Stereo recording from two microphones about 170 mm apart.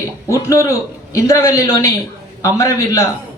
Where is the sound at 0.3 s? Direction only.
20° left (ahead or behind).